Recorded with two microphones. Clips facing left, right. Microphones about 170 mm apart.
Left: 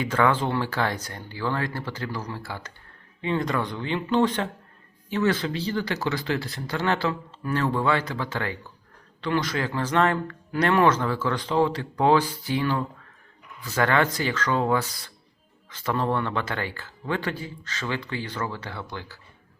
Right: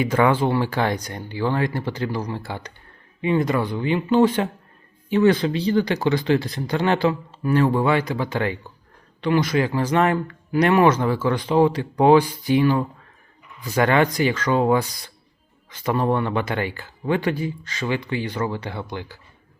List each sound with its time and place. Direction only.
0.0 s speech: 10° right (ahead or behind)